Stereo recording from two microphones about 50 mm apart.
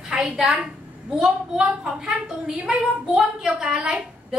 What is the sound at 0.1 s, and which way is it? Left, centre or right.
Speech, centre.